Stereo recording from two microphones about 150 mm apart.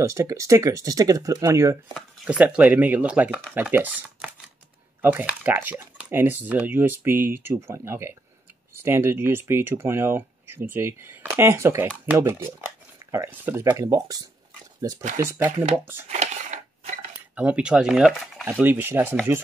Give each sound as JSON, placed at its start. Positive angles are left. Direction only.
{"t": 0.0, "sound": "speech", "side_deg": -20}
{"t": 2.2, "sound": "speech", "side_deg": -10}
{"t": 16.1, "sound": "crushing", "side_deg": -50}
{"t": 17.4, "sound": "speech", "side_deg": -10}